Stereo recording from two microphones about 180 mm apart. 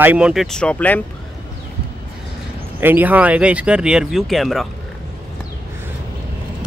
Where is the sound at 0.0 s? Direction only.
5° right (ahead or behind); by 1.0 s 10° left (ahead or behind).